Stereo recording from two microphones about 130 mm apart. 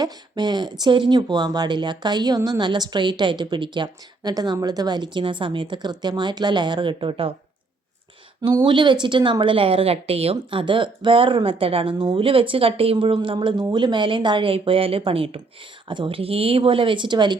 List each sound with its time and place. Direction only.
0.0 s speech: 35° right (ahead or behind)
8.4 s speech: 35° right (ahead or behind)